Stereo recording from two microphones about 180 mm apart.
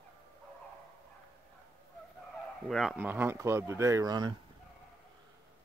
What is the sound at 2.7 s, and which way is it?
Speech, centre (ahead or behind).